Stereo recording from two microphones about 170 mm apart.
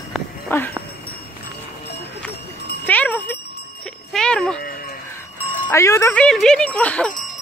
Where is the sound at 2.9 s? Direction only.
10° left (ahead or behind).